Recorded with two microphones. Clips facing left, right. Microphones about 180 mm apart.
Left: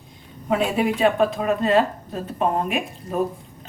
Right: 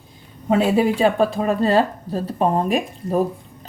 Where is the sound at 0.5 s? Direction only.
35° right (ahead or behind).